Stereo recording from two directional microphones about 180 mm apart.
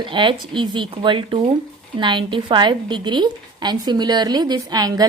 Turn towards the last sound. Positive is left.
turn(degrees=-20)  # may be behind; listen again after turning